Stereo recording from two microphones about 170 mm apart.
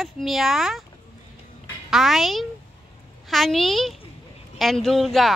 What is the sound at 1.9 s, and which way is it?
Speech, centre (ahead or behind).